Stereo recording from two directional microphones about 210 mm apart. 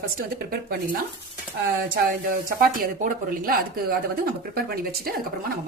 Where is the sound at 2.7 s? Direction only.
40° right (ahead or behind).